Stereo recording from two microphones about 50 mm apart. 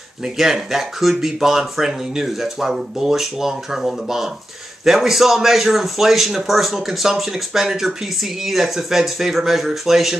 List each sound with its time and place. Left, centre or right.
0.2 s a man's voice: centre